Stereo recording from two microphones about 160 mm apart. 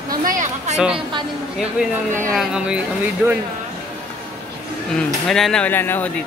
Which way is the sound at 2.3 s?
5° right (ahead or behind).